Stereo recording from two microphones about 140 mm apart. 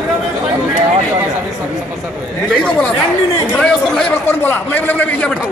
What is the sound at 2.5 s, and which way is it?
A man's voice, 5° left (ahead or behind).